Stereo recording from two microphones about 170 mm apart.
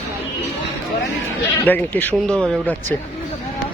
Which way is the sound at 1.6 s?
10° left (ahead or behind).